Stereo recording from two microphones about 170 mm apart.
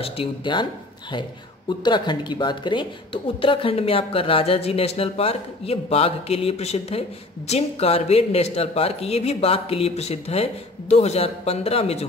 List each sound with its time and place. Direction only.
0.0 s speech: 30° left (ahead or behind)
1.9 s speech: 25° left (ahead or behind)